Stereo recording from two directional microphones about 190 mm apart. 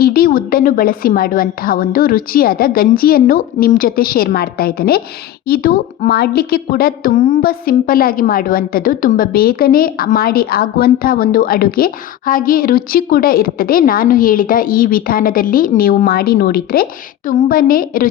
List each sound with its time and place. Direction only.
0.0 s speech: 50° left (ahead or behind)